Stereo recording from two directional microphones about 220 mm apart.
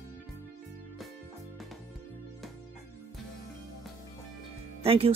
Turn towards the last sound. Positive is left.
turn(degrees=-25)  # may be behind; listen again after turning